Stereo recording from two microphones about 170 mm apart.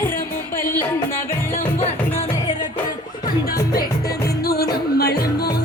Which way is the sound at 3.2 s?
55° left (ahead or behind).